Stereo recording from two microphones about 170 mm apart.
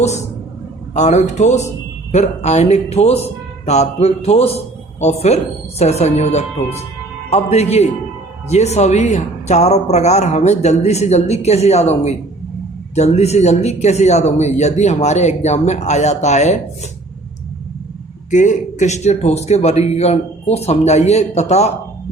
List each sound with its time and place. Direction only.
0.9 s a man's voice: 45° left (ahead or behind)
18.3 s a man's voice: 45° left (ahead or behind)